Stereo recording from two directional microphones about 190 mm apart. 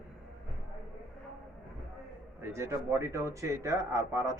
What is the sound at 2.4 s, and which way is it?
Speech, 15° right (ahead or behind).